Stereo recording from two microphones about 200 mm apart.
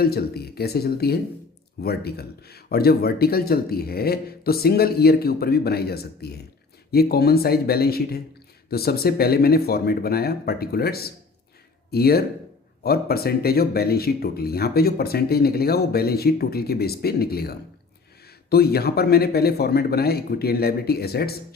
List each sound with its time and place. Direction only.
0.0 s speech: 50° left (ahead or behind)